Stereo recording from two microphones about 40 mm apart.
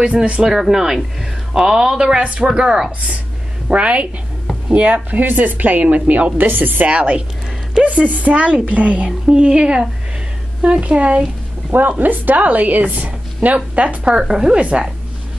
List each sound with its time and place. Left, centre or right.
0.0 s a woman's voice: right
0.5 s a woman's voice: centre; by 2.6 s right
2.6 s speech: centre
3.6 s speech: right
6.4 s speech: right
6.9 s speech: right
9.3 s a woman's voice: right
12.0 s speech: right
14.1 s a woman's voice: centre
14.6 s speech: right